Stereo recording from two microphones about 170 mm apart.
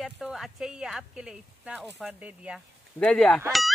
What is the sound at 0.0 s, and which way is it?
Speech, centre (ahead or behind).